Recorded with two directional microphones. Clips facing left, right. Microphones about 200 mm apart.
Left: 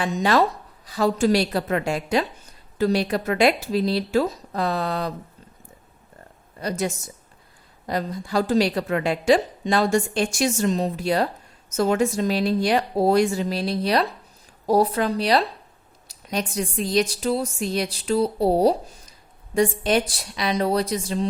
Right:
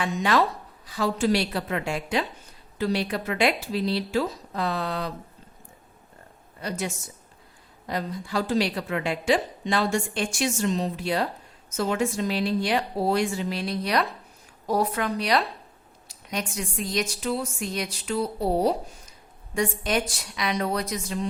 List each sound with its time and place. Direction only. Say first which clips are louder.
0.0 s a woman's voice: left 3 dB; 35° left (ahead or behind)
6.6 s a woman's voice: left 5 dB; 40° left (ahead or behind)